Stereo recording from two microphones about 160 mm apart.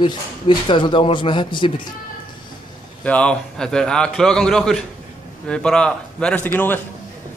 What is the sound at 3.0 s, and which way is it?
A man's voice, 10° left (ahead or behind).